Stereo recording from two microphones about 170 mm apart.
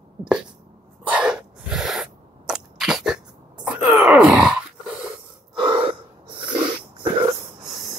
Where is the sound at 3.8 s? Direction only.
10° right (ahead or behind).